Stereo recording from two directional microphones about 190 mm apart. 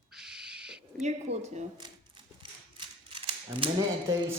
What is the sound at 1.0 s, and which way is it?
Speech, 35° right (ahead or behind).